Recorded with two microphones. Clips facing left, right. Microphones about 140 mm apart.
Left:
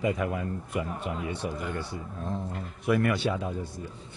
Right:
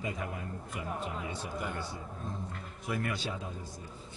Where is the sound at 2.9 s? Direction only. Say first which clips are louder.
Left 10 dB; 70° left (ahead or behind).